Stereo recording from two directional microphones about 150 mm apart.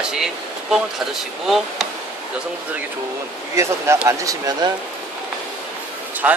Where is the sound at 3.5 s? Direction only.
20° right (ahead or behind).